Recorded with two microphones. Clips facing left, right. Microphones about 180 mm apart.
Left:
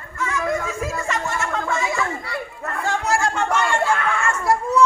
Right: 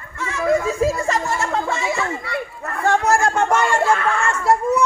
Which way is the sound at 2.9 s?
50° right (ahead or behind).